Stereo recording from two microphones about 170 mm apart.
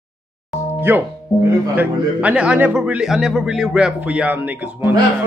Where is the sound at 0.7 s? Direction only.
10° right (ahead or behind).